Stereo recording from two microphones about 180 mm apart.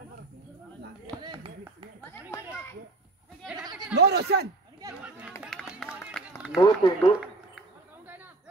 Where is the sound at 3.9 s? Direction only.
65° right (ahead or behind).